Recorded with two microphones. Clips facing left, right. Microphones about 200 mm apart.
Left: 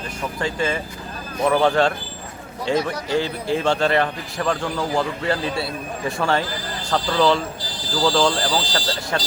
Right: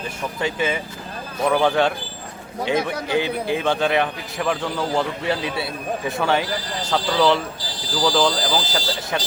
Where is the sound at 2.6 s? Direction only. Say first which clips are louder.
Even; 60° right (ahead or behind).